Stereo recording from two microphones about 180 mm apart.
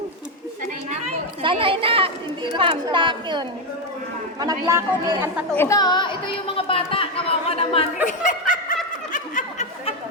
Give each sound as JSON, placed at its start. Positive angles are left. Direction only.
{"t": 0.9, "sound": "speech", "side_deg": -35}
{"t": 5.5, "sound": "speech", "side_deg": 15}
{"t": 8.0, "sound": "speech", "side_deg": 45}
{"t": 9.1, "sound": "snicker", "side_deg": 45}